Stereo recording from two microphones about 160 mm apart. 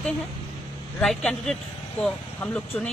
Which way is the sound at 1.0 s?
5° left (ahead or behind).